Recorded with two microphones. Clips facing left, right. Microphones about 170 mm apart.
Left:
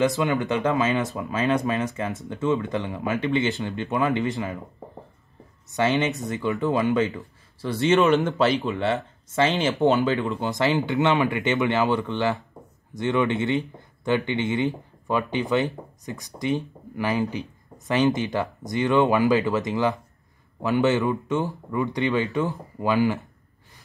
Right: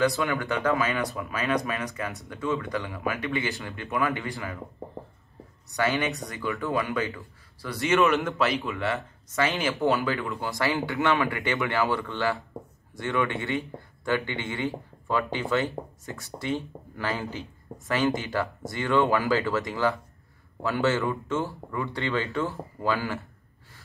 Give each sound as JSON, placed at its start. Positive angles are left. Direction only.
{"t": 0.0, "sound": "speech", "side_deg": 20}
{"t": 5.7, "sound": "speech", "side_deg": 25}